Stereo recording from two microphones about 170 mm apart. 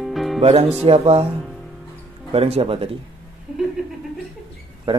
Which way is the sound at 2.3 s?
35° right (ahead or behind).